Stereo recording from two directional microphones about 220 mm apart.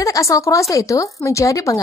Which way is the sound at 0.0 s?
15° left (ahead or behind).